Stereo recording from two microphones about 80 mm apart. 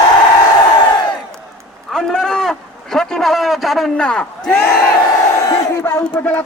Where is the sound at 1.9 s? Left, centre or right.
Centre.